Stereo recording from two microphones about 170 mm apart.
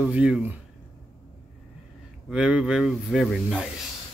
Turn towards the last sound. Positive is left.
turn(degrees=-5)  # may be behind; listen again after turning